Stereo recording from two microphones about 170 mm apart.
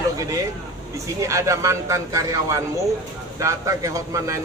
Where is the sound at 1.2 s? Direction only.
15° right (ahead or behind).